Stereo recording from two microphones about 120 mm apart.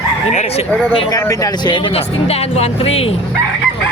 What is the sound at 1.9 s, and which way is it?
Speech, 60° left (ahead or behind).